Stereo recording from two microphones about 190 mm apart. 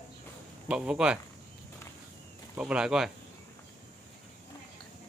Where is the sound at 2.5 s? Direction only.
5° right (ahead or behind).